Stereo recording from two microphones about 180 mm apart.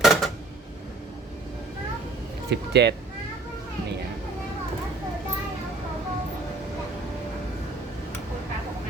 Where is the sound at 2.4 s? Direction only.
70° right (ahead or behind).